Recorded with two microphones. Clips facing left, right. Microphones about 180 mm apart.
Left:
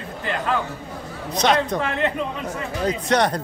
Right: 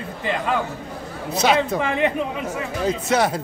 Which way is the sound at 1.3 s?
5° right (ahead or behind).